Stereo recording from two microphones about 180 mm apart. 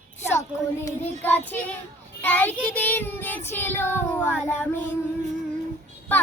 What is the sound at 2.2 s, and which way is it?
Speech, 10° left (ahead or behind).